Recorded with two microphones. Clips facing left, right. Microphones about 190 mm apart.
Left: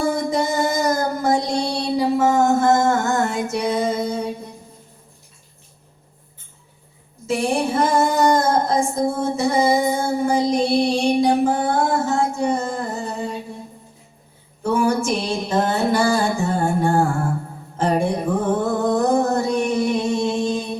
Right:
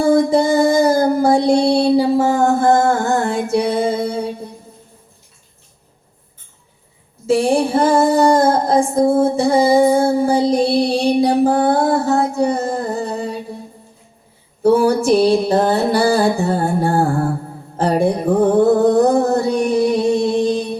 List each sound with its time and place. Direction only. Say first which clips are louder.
0.0 s music: right 7 dB; 30° right (ahead or behind)
7.3 s female singing: right 6 dB; 30° right (ahead or behind)
14.6 s female singing: right 6 dB; 35° right (ahead or behind)
17.7 s music: right 4 dB; 35° right (ahead or behind)